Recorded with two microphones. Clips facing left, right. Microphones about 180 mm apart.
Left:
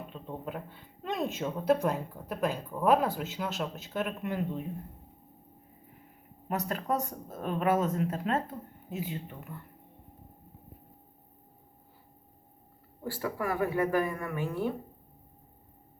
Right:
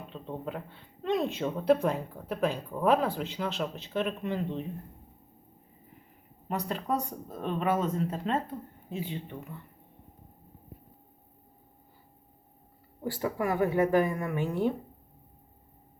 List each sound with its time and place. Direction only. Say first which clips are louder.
0.1 s speech: right 5 dB; 5° left (ahead or behind)
6.5 s speech: even; centre (ahead or behind)
13.0 s speech: right 3 dB; 20° right (ahead or behind)